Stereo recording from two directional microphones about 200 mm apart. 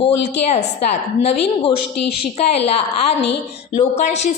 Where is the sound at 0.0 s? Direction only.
35° left (ahead or behind).